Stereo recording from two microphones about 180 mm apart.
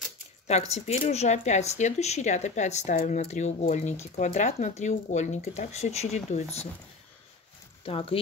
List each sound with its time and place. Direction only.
0.5 s speech: 40° left (ahead or behind)
7.8 s speech: 30° left (ahead or behind)